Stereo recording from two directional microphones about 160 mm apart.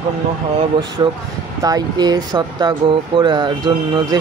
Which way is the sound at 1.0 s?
25° right (ahead or behind).